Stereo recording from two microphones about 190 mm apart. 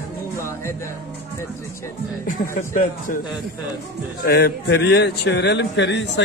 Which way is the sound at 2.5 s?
45° left (ahead or behind).